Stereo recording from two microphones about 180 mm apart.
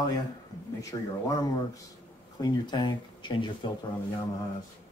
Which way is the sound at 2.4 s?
25° left (ahead or behind).